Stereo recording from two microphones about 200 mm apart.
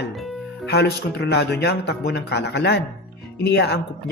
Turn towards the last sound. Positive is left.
turn(degrees=55)  # may be behind; listen again after turning